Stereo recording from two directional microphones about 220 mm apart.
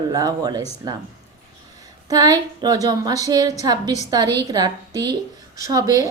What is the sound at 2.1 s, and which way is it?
A woman's voice, 15° right (ahead or behind).